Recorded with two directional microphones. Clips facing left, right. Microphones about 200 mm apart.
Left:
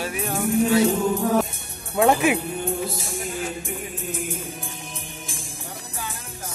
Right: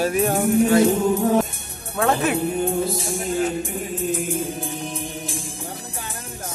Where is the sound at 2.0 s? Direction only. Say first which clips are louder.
Left 2 dB; 15° left (ahead or behind).